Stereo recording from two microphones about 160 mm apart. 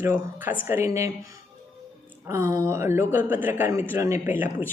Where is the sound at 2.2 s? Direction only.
15° right (ahead or behind).